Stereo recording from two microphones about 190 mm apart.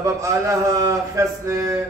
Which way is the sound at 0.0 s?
15° right (ahead or behind).